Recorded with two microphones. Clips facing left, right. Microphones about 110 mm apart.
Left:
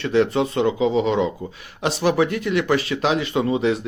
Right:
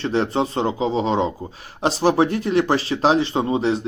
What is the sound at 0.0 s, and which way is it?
Speech, 35° right (ahead or behind).